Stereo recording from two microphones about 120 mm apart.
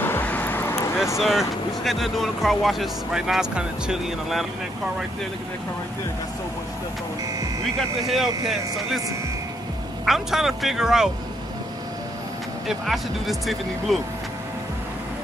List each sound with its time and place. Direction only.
0.0 s vehicle: 15° left (ahead or behind)
1.1 s speech: centre (ahead or behind)
8.1 s speech: centre (ahead or behind)
10.0 s speech: 5° right (ahead or behind)
12.6 s speech: centre (ahead or behind)